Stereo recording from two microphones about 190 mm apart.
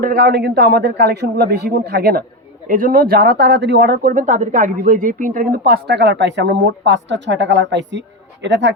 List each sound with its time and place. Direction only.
0.0 s speech: 50° right (ahead or behind)
2.6 s speech: 45° right (ahead or behind); by 8.7 s 70° right (ahead or behind)